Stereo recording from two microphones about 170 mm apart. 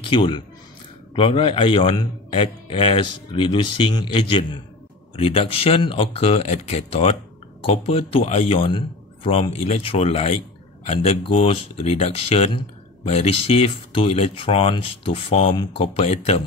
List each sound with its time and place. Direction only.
0.1 s a man's voice: 30° left (ahead or behind)